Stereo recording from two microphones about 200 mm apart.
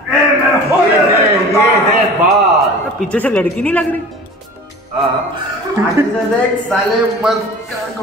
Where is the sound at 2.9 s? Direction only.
5° left (ahead or behind).